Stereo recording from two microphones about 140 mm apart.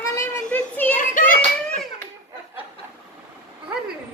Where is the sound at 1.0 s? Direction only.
70° left (ahead or behind).